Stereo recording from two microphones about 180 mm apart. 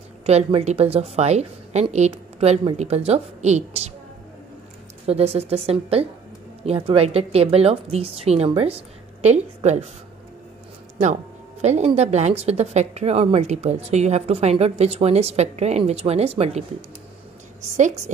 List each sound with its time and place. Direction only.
0.3 s a woman's voice: 35° right (ahead or behind)
5.0 s a woman's voice: 35° right (ahead or behind)
11.6 s a woman's voice: 35° right (ahead or behind)
17.7 s a woman's voice: 40° right (ahead or behind)